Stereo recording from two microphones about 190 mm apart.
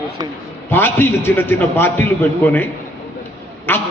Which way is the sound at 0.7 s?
10° left (ahead or behind).